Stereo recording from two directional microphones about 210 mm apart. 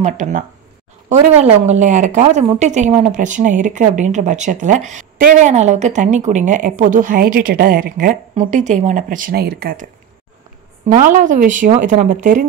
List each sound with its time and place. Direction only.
0.0 s speech: 35° right (ahead or behind)
10.9 s speech: 40° right (ahead or behind)